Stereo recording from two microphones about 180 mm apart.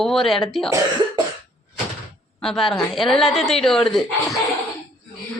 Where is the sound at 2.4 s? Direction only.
Centre (ahead or behind).